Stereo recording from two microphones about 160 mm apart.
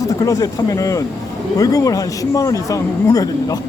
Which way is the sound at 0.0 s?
20° left (ahead or behind).